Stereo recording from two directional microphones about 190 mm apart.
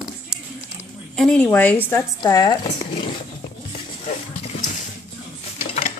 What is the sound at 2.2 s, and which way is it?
Speech, 20° left (ahead or behind).